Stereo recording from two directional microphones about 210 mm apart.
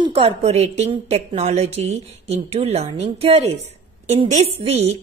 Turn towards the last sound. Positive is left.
turn(degrees=-30)  # may be behind; listen again after turning